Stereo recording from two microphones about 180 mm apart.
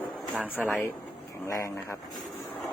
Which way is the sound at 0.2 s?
5° right (ahead or behind).